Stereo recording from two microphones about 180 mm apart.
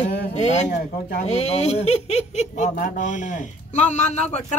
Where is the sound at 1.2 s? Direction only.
35° left (ahead or behind).